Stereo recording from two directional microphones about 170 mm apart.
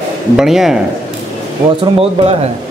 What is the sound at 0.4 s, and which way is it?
Speech, centre (ahead or behind).